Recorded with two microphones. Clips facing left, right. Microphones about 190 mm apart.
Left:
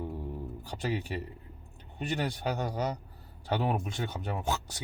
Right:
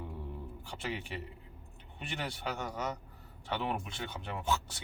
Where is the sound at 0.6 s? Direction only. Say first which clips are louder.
Left 6 dB; 40° left (ahead or behind).